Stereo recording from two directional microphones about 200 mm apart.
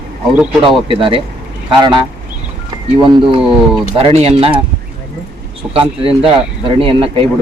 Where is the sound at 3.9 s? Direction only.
30° right (ahead or behind).